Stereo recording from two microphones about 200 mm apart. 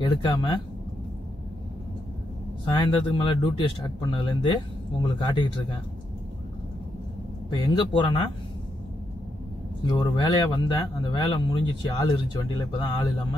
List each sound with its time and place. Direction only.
0.0 s speech: 20° left (ahead or behind)
2.6 s speech: 25° left (ahead or behind)
7.4 s speech: 25° left (ahead or behind)
9.8 s speech: 20° left (ahead or behind)